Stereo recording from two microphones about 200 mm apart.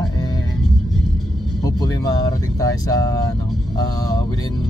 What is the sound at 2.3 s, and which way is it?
Speech, 15° left (ahead or behind).